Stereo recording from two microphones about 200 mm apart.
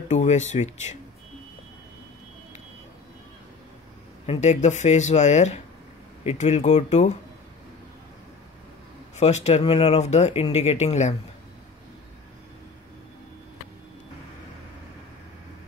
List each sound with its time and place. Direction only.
0.1 s speech: 35° left (ahead or behind)
4.3 s speech: 35° left (ahead or behind)
9.1 s speech: 35° left (ahead or behind)